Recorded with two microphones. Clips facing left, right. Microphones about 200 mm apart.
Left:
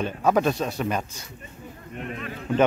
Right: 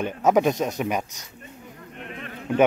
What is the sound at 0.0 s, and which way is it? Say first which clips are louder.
A man's voice: right 2 dB; 15° right (ahead or behind).